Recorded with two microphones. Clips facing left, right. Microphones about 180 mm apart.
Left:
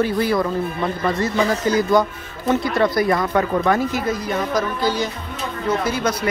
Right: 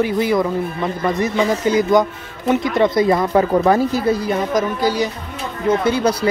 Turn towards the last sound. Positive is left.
turn(degrees=-30)  # may be behind; listen again after turning